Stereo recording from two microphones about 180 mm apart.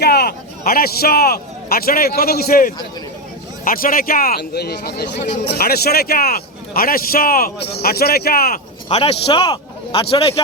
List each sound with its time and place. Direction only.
0.0 s a man's voice: 60° left (ahead or behind)
5.1 s a man's voice: 40° left (ahead or behind)
5.5 s a man's voice: 60° left (ahead or behind)
8.9 s a man's voice: 35° left (ahead or behind)